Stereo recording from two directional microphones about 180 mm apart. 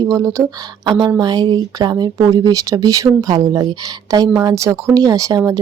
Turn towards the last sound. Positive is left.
turn(degrees=-20)  # may be behind; listen again after turning